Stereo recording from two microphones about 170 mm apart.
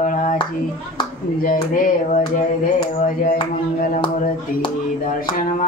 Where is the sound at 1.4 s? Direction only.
55° left (ahead or behind).